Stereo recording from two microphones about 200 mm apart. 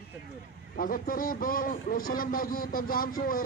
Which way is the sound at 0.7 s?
45° left (ahead or behind).